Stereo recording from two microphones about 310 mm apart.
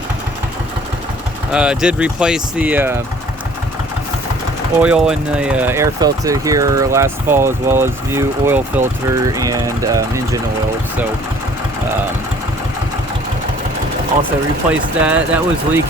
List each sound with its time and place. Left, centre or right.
1.5 s speech: centre
4.8 s speech: centre
14.7 s speech: centre